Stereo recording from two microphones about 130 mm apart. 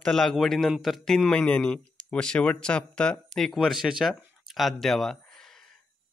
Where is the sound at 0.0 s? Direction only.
5° left (ahead or behind).